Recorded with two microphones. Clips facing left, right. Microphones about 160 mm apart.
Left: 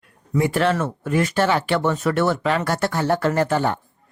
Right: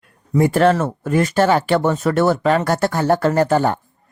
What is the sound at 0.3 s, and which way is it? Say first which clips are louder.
Speech: right 5 dB; 45° right (ahead or behind).